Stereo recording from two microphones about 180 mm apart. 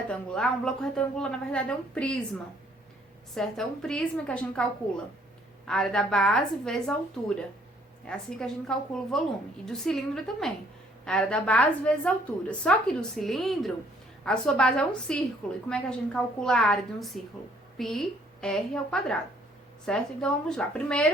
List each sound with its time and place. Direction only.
0.1 s a woman's voice: 5° left (ahead or behind)
3.3 s a woman's voice: centre (ahead or behind)
5.6 s a woman's voice: 5° left (ahead or behind)